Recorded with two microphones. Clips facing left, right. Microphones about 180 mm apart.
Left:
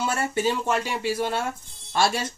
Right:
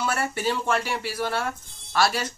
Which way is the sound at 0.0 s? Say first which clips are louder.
Left 2 dB; 20° left (ahead or behind).